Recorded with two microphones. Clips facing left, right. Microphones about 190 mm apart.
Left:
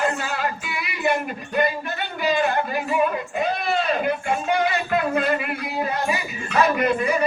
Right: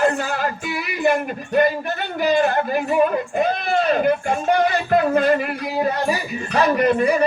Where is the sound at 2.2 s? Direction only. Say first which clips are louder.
Right 4 dB; 45° right (ahead or behind).